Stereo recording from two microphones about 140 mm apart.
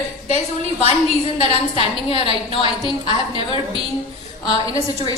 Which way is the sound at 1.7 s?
40° left (ahead or behind).